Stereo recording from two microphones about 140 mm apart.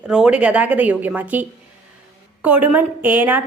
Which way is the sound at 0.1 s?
5° right (ahead or behind).